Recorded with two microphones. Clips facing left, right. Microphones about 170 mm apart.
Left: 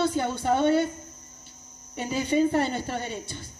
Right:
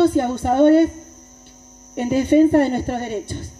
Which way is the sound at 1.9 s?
50° right (ahead or behind).